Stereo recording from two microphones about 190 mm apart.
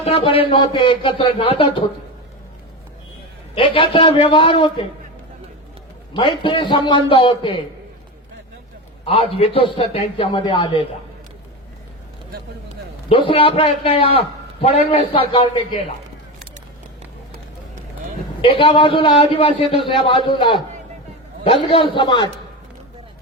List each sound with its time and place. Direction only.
0.0 s a man's voice: 30° left (ahead or behind)
3.5 s a man's voice: 30° left (ahead or behind)
6.1 s a man's voice: 25° left (ahead or behind)
9.0 s a man's voice: 30° left (ahead or behind)
13.1 s a man's voice: 30° left (ahead or behind)
18.4 s a man's voice: 30° left (ahead or behind)